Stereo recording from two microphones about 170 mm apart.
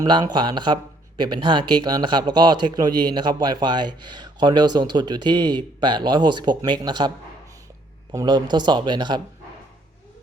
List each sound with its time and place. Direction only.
0.0 s speech: 25° right (ahead or behind)
8.1 s speech: 25° right (ahead or behind)